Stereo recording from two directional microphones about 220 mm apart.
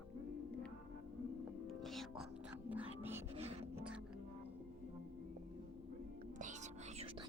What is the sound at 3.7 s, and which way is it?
Music, 5° right (ahead or behind).